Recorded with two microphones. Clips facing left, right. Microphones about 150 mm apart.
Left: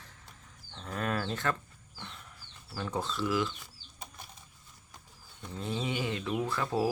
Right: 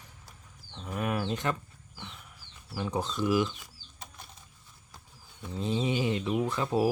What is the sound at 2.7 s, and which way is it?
Speech, 15° right (ahead or behind).